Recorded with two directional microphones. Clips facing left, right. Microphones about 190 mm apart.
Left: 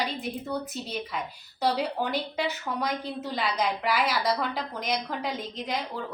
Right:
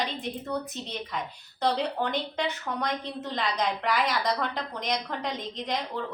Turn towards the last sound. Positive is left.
turn(degrees=5)  # may be behind; listen again after turning